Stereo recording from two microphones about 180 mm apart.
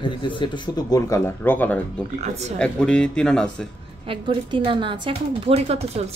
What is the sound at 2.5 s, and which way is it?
Speech, 5° left (ahead or behind).